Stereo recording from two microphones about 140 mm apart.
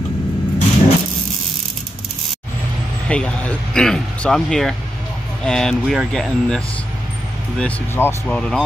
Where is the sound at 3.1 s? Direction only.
10° left (ahead or behind).